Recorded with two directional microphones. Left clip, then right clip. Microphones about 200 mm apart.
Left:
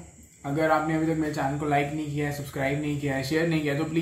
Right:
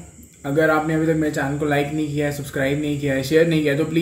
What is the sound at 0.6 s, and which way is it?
Speech, 10° right (ahead or behind).